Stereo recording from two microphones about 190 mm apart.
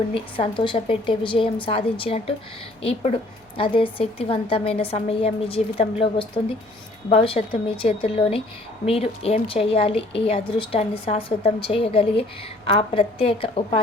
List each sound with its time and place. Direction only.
0.1 s a woman's voice: 25° left (ahead or behind)